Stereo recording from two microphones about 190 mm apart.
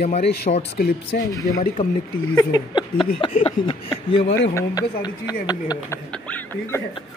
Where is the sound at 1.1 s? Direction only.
55° left (ahead or behind).